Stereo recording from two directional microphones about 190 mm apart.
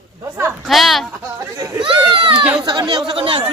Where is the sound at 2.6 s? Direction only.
20° right (ahead or behind).